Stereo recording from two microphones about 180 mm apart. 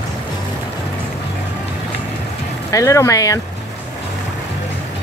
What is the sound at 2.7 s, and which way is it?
Speech, 20° left (ahead or behind).